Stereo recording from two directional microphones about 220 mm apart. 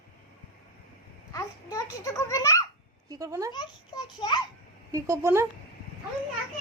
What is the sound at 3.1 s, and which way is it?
Speech, 15° right (ahead or behind).